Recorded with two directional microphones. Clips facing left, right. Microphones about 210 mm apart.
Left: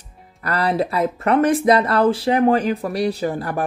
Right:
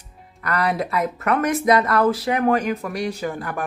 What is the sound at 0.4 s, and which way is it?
Speech, 30° left (ahead or behind).